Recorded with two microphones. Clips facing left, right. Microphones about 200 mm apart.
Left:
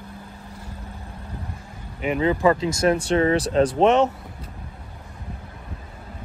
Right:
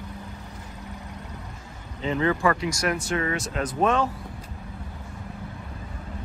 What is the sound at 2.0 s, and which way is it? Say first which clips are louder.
Speech: left 4 dB; 15° left (ahead or behind).